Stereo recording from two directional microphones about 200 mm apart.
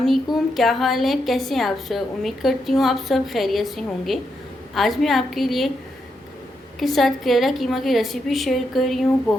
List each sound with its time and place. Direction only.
0.0 s a woman's voice: centre (ahead or behind)
6.7 s a woman's voice: centre (ahead or behind)